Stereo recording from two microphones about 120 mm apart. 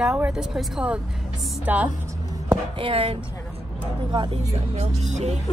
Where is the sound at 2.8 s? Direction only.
50° right (ahead or behind).